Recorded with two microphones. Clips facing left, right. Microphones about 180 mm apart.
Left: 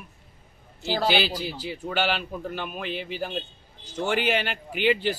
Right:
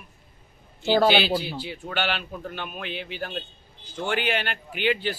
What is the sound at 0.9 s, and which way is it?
Speech, 55° right (ahead or behind).